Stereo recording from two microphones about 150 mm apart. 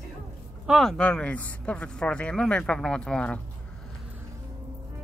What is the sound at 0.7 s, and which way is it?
Speech, centre (ahead or behind).